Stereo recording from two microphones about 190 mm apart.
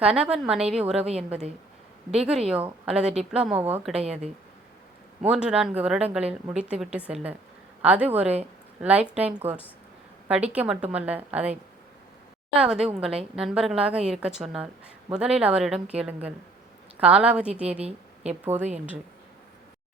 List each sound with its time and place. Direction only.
0.0 s a woman's voice: 5° right (ahead or behind)
2.0 s a woman's voice: 5° right (ahead or behind)
4.0 s speech: 35° right (ahead or behind)
5.2 s a woman's voice: 5° right (ahead or behind)
12.5 s a woman's voice: 5° right (ahead or behind)
17.7 s a woman's voice: 35° right (ahead or behind)
18.4 s a woman's voice: 10° right (ahead or behind)